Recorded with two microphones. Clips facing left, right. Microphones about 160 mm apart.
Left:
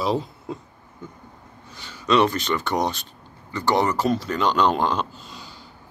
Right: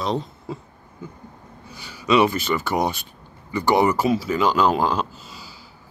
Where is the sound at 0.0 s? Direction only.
5° left (ahead or behind).